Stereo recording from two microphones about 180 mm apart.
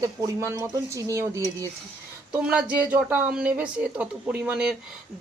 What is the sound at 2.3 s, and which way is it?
A woman's voice, 5° right (ahead or behind).